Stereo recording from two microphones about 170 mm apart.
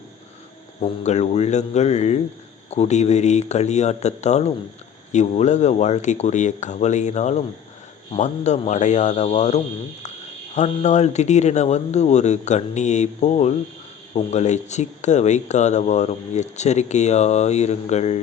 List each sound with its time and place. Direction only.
0.8 s speech: 40° left (ahead or behind)